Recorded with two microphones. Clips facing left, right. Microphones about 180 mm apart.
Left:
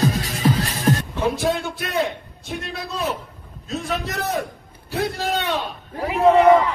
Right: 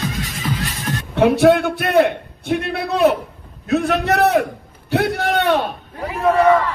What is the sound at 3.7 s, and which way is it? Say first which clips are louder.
A man's voice: right 9 dB; 65° right (ahead or behind).